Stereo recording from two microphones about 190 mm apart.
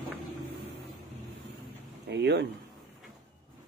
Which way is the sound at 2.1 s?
65° right (ahead or behind).